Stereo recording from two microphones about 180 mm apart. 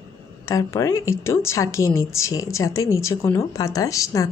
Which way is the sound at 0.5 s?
15° left (ahead or behind).